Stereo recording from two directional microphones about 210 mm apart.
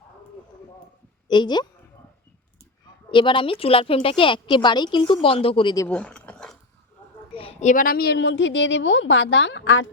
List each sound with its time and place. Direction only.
1.3 s a woman's voice: 20° left (ahead or behind)
3.1 s a woman's voice: 25° left (ahead or behind)
5.9 s a sound: 5° left (ahead or behind)
7.3 s a woman's voice: 30° left (ahead or behind); by 9.8 s 60° left (ahead or behind)